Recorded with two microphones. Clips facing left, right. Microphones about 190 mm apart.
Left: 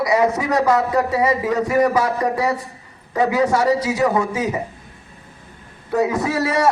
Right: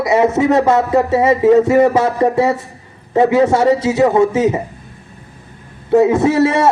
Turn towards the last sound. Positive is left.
turn(degrees=-25)  # may be behind; listen again after turning